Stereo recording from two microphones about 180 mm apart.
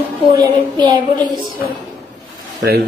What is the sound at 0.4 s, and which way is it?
Child singing, 25° right (ahead or behind).